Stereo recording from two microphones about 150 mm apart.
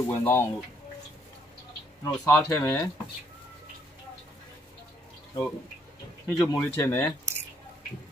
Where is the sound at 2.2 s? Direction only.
25° left (ahead or behind).